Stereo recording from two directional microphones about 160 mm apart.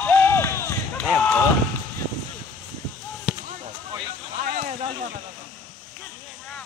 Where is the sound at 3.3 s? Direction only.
10° right (ahead or behind).